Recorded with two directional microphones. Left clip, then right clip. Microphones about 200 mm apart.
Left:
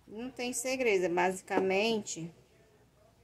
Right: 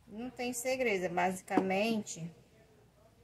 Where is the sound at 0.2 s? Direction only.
40° left (ahead or behind).